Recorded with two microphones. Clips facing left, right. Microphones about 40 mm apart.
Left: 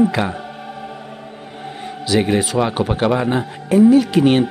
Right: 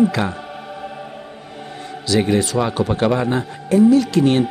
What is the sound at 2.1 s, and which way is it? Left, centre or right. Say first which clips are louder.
Speech: even; centre.